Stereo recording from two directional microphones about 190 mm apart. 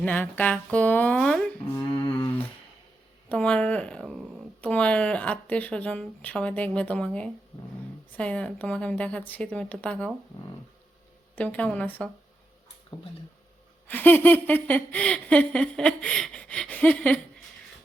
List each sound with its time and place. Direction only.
0.0 s speech: 10° left (ahead or behind)
1.9 s a sound: 20° left (ahead or behind)
3.2 s speech: 5° left (ahead or behind)
11.3 s speech: 10° left (ahead or behind)
12.9 s a sound: 20° left (ahead or behind)
13.8 s speech: 10° left (ahead or behind)